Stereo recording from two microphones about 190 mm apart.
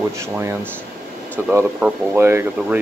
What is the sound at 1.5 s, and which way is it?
Speech, 10° right (ahead or behind).